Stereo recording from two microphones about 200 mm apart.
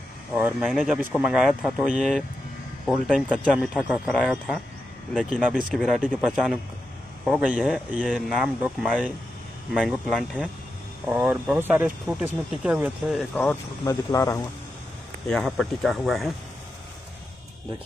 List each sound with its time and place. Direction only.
0.3 s speech: 10° right (ahead or behind)
5.8 s speech: centre (ahead or behind)
11.1 s speech: 10° right (ahead or behind); by 14.4 s 15° left (ahead or behind)
15.2 s speech: centre (ahead or behind)